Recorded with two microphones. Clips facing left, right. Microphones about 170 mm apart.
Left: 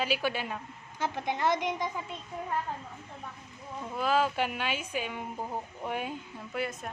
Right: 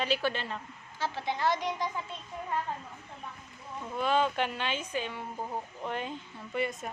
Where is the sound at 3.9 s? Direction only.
5° left (ahead or behind).